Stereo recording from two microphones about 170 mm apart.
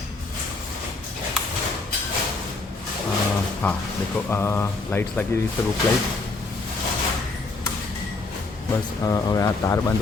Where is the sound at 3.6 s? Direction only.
10° left (ahead or behind).